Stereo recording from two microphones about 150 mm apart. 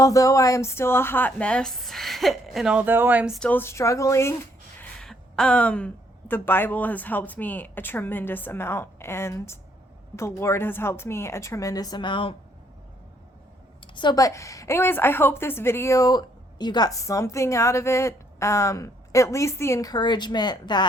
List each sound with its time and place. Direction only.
0.0 s a woman's voice: 20° left (ahead or behind); by 3.3 s 10° right (ahead or behind)
3.3 s speech: 10° left (ahead or behind)
4.9 s a woman's voice: 5° left (ahead or behind); by 12.3 s 30° left (ahead or behind)
13.8 s a woman's voice: 30° left (ahead or behind)